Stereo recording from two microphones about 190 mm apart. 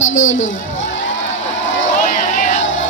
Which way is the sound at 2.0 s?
40° left (ahead or behind).